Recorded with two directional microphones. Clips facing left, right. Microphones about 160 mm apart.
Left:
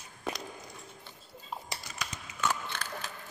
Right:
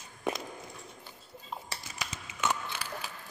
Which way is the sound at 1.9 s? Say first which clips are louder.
Even; 20° right (ahead or behind).